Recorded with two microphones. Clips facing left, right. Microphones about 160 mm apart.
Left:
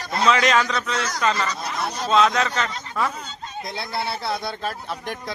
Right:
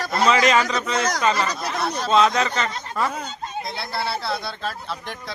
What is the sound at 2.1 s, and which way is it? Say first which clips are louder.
Speech: even; centre (ahead or behind).